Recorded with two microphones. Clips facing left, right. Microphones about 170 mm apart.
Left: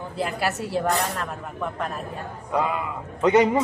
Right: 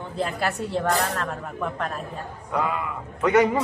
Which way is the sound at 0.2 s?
5° left (ahead or behind).